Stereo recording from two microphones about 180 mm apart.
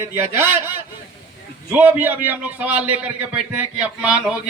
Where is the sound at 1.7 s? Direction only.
10° right (ahead or behind).